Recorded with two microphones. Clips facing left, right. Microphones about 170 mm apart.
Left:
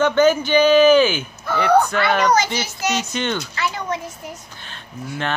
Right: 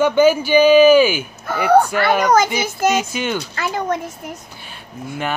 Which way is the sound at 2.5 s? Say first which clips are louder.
Right 5 dB; 50° right (ahead or behind).